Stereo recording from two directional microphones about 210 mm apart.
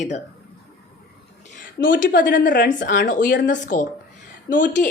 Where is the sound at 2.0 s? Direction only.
40° left (ahead or behind).